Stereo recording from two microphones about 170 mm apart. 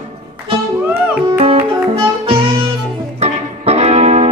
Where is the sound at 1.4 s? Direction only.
30° right (ahead or behind).